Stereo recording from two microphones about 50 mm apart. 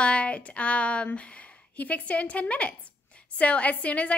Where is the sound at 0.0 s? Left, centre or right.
Left.